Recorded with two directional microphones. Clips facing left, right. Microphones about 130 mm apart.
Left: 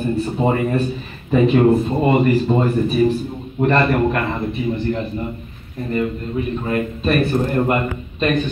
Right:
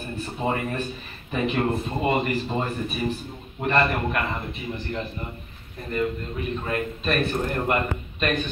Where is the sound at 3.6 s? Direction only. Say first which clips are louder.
Left 7 dB; 40° left (ahead or behind).